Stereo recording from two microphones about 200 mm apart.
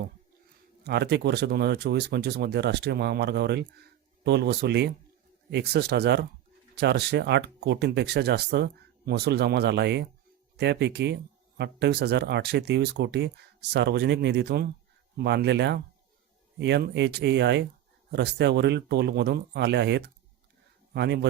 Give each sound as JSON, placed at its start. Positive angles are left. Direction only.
{"t": 0.9, "sound": "speech", "side_deg": -55}